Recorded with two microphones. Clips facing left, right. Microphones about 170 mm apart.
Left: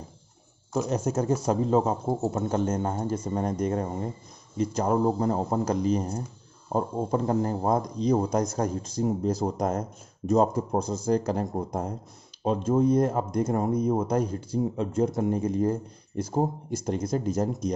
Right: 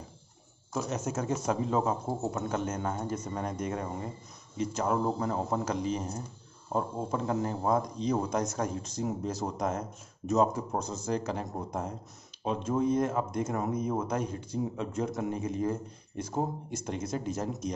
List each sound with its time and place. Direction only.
0.7 s speech: 35° left (ahead or behind)